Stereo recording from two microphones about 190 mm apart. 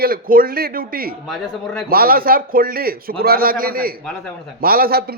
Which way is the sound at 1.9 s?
50° right (ahead or behind).